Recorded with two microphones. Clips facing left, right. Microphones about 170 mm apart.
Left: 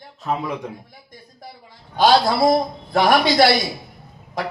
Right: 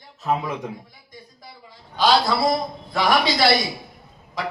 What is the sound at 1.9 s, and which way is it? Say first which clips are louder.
A man's voice: left 3 dB; 50° left (ahead or behind).